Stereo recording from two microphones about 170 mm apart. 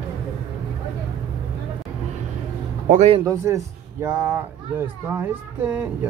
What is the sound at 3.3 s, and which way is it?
Speech, 20° right (ahead or behind).